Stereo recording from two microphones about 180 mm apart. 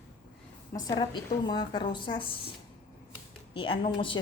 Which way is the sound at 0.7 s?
20° left (ahead or behind).